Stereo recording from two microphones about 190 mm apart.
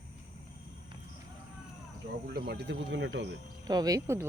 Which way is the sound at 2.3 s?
60° right (ahead or behind).